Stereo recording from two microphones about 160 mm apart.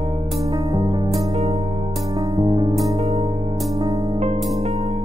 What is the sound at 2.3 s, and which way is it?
Music, 25° right (ahead or behind).